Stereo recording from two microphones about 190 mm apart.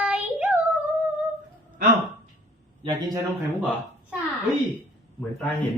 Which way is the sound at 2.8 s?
20° right (ahead or behind).